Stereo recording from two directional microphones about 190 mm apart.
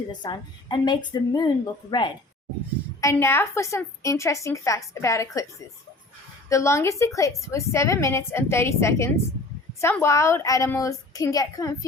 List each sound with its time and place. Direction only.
0.1 s a woman's voice: 25° left (ahead or behind)
6.5 s a woman's voice: 15° left (ahead or behind)